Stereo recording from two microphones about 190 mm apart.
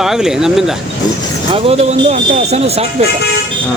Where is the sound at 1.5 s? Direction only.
35° right (ahead or behind).